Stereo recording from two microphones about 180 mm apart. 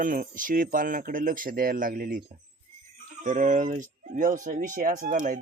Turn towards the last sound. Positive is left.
turn(degrees=-45)  # may be behind; listen again after turning